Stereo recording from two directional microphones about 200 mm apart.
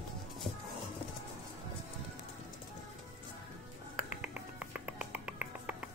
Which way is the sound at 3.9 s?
5° right (ahead or behind).